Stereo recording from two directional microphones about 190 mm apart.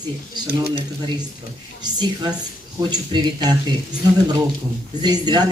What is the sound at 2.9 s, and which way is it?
Speech, 20° right (ahead or behind).